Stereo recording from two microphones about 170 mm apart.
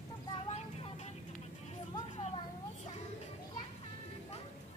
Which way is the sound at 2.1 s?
40° left (ahead or behind).